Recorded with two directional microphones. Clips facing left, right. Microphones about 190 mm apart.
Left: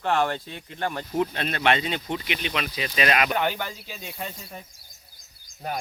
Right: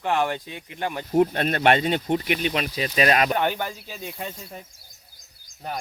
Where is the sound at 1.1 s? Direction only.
45° right (ahead or behind).